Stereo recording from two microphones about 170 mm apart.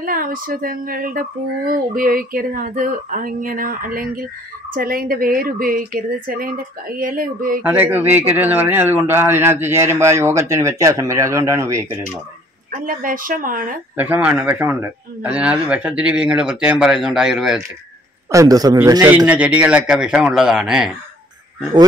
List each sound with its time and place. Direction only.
0.0 s a sound: 55° right (ahead or behind)
7.6 s a man's voice: 10° right (ahead or behind)
12.8 s speech: 55° right (ahead or behind)
13.9 s a man's voice: 10° right (ahead or behind)
18.3 s a man's voice: 20° right (ahead or behind); by 20.9 s 5° right (ahead or behind)